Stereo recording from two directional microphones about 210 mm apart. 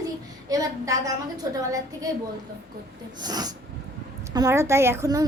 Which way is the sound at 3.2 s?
20° right (ahead or behind).